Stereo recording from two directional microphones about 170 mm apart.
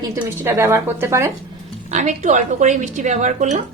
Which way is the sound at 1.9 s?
45° right (ahead or behind).